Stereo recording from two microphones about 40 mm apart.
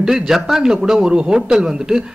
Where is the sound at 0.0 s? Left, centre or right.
Centre.